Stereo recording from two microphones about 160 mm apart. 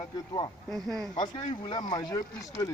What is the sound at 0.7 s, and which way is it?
Speech, centre (ahead or behind).